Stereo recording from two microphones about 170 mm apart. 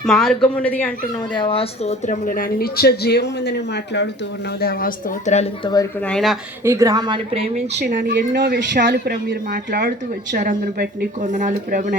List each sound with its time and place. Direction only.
0.0 s speech: centre (ahead or behind)
1.4 s speech: 35° left (ahead or behind); by 4.1 s 85° left
4.6 s speech: 55° left (ahead or behind)
5.6 s speech: 20° left (ahead or behind)
6.1 s speech: 5° left (ahead or behind)
6.7 s a woman's voice: 20° right (ahead or behind)
8.0 s speech: 80° right; by 11.9 s 50° right (ahead or behind)